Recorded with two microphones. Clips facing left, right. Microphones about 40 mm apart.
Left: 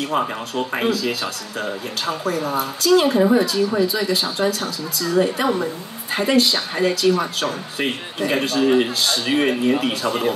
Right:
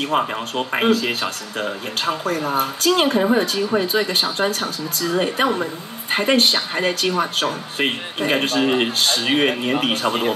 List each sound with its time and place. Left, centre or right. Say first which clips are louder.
0.1 s a woman's voice: right 2 dB; right